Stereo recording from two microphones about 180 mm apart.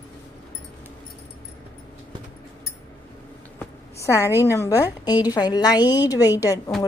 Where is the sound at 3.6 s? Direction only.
15° left (ahead or behind).